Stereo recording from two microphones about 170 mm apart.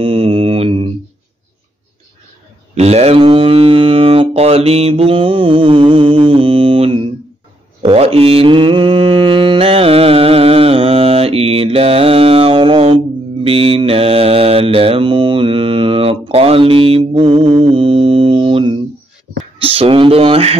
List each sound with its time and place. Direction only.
0.0 s mantra: 30° right (ahead or behind)
2.7 s mantra: 40° right (ahead or behind)